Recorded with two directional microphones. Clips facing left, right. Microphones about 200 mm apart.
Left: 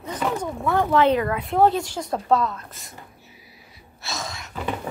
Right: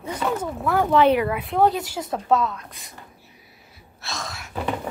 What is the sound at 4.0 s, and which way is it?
Sneeze, centre (ahead or behind).